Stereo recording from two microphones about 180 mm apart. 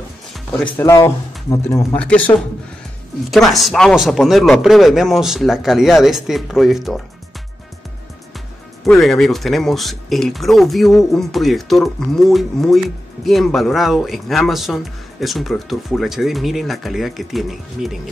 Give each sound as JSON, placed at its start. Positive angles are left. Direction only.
{"t": 0.7, "sound": "speech", "side_deg": 15}
{"t": 8.8, "sound": "speech", "side_deg": 0}